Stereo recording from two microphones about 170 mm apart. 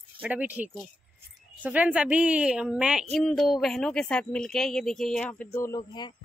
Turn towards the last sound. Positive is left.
turn(degrees=25)  # may be behind; listen again after turning